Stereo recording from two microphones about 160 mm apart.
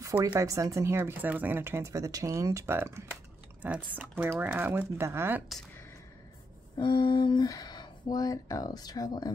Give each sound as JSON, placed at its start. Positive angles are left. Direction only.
{"t": 0.0, "sound": "speech", "side_deg": -15}
{"t": 6.8, "sound": "speech", "side_deg": 30}